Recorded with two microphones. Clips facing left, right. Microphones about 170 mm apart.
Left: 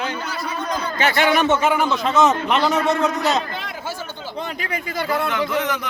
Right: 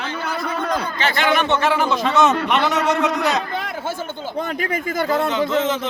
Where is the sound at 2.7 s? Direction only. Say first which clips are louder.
Even; 90° right.